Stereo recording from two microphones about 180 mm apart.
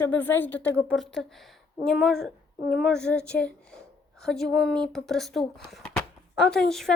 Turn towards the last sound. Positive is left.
turn(degrees=0)  # may be behind; listen again after turning